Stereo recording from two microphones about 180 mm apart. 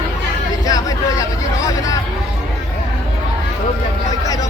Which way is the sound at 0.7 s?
20° left (ahead or behind).